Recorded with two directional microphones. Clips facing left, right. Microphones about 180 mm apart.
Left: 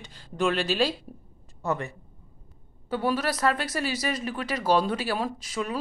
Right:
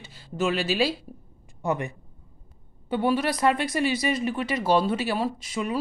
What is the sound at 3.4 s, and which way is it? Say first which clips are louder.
A woman's voice: right 3 dB; 10° right (ahead or behind).